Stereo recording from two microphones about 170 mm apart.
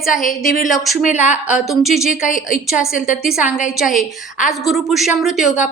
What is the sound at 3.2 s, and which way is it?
A woman's voice, 5° right (ahead or behind).